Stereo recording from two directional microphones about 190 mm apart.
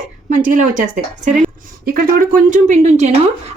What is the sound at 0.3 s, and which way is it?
A woman's voice, 40° right (ahead or behind).